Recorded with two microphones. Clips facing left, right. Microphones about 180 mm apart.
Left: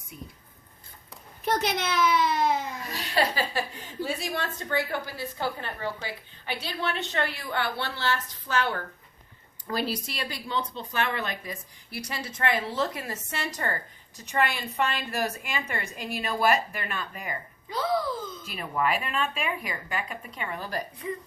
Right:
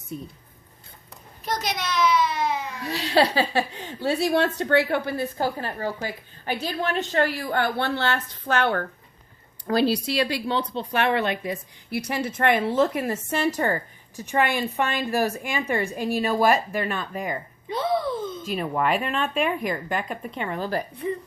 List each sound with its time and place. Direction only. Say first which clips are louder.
1.5 s a child's voice: right 1 dB; 55° left (ahead or behind)
2.3 s baby cry: left 1 dB; 55° left (ahead or behind)
2.9 s a woman's voice: right 7 dB; 75° right (ahead or behind)
11.9 s a woman's voice: right 9 dB; 55° right (ahead or behind); by 17.3 s 40° right (ahead or behind)
17.7 s a sound: right 3 dB; 25° right (ahead or behind)
18.4 s a woman's voice: right 3 dB; 40° right (ahead or behind)